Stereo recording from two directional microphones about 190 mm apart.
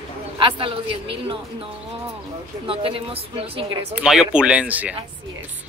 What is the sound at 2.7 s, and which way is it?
A woman's voice, 30° right (ahead or behind).